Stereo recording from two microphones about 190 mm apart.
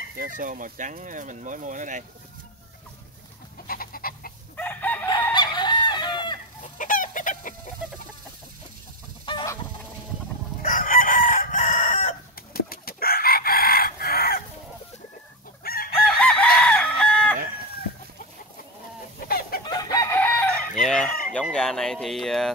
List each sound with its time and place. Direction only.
0.4 s speech: 45° right (ahead or behind)
3.6 s chicken: 50° left (ahead or behind)
4.6 s chicken: 10° left (ahead or behind)
5.1 s fowl: 25° left (ahead or behind)
6.6 s chicken: 45° left (ahead or behind)
9.2 s fowl: 20° left (ahead or behind)
10.6 s chicken: 45° left (ahead or behind)
15.6 s chicken: 50° left (ahead or behind)
16.2 s chicken: 5° left (ahead or behind)
19.1 s chicken: 50° left (ahead or behind)
19.6 s chicken: 20° left (ahead or behind); by 21.1 s 5° left (ahead or behind)
21.3 s fowl: 5° left (ahead or behind)